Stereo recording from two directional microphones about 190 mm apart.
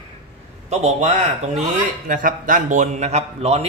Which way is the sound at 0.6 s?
35° right (ahead or behind).